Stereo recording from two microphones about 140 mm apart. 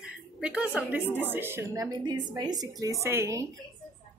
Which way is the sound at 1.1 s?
15° right (ahead or behind).